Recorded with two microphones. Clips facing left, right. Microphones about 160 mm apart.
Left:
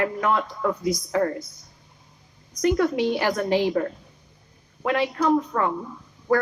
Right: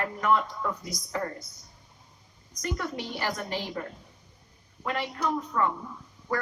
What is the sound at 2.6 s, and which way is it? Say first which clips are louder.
A woman's voice: left 12 dB; 65° left (ahead or behind).